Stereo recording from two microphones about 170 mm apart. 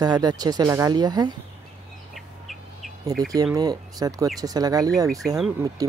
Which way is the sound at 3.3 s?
20° right (ahead or behind).